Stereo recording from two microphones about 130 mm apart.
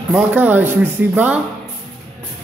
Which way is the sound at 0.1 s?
10° right (ahead or behind).